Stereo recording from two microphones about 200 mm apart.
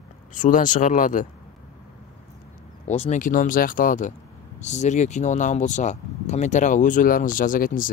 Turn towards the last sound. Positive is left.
turn(degrees=45)  # may be behind; listen again after turning